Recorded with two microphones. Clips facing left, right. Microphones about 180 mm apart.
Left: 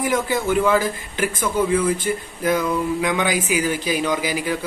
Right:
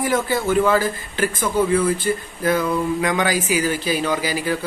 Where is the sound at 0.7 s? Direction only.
15° left (ahead or behind).